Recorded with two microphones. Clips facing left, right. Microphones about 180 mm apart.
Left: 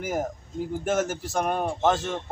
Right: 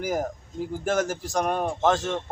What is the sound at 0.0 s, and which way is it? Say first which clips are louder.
Speech: right 1 dB; centre (ahead or behind).